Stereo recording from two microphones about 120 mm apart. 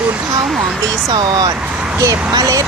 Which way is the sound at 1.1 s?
35° right (ahead or behind).